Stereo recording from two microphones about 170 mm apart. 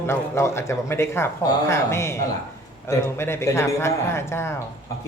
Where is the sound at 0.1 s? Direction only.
15° left (ahead or behind).